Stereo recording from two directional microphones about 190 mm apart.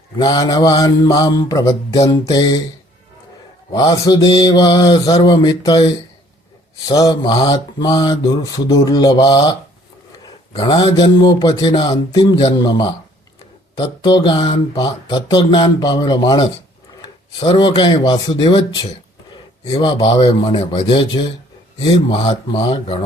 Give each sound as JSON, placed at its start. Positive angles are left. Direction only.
{"t": 0.2, "sound": "speech", "side_deg": 20}
{"t": 3.7, "sound": "speech", "side_deg": 20}
{"t": 6.8, "sound": "speech", "side_deg": 20}
{"t": 10.2, "sound": "dog", "side_deg": 25}
{"t": 11.0, "sound": "speech", "side_deg": 20}